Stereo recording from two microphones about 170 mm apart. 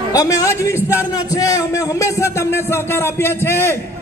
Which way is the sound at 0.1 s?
20° left (ahead or behind).